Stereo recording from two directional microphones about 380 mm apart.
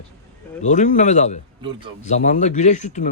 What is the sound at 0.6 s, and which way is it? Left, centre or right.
Speech, centre.